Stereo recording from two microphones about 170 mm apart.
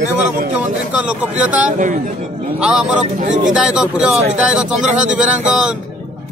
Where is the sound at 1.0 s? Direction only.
5° right (ahead or behind).